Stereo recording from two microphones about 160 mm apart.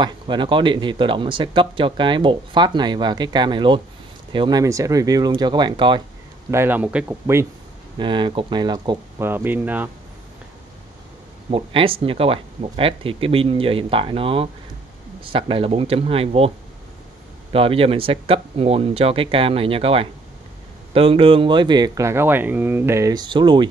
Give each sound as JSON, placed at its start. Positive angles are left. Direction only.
{"t": 0.0, "sound": "speech", "side_deg": -30}
{"t": 6.5, "sound": "speech", "side_deg": -15}
{"t": 8.0, "sound": "speech", "side_deg": -30}
{"t": 9.2, "sound": "speech", "side_deg": -15}
{"t": 11.5, "sound": "speech", "side_deg": -35}